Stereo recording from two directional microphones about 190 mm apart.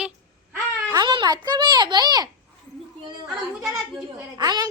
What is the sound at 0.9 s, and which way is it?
A child's voice, 20° right (ahead or behind).